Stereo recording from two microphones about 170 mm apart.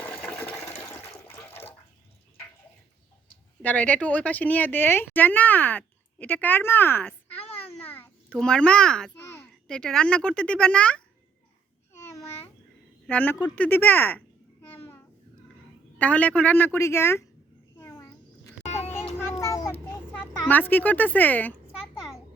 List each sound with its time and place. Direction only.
0.2 s water: 10° left (ahead or behind)
0.8 s toilet flush: 10° left (ahead or behind)
3.6 s speech: 10° left (ahead or behind)
7.4 s a sound: 35° left (ahead or behind)
7.9 s a child's voice: 10° left (ahead or behind)
9.2 s a sound: 15° left (ahead or behind)
9.6 s speech: 5° left (ahead or behind)
13.1 s speech: 10° left (ahead or behind)
16.0 s speech: 10° left (ahead or behind)
17.7 s a sound: 20° left (ahead or behind)
18.6 s vehicle: 40° left (ahead or behind)
19.2 s child singing: 15° left (ahead or behind)
20.1 s speech: 10° left (ahead or behind)
21.9 s a sound: 5° right (ahead or behind)